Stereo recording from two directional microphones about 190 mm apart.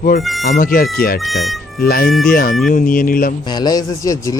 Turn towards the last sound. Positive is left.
turn(degrees=15)  # may be behind; listen again after turning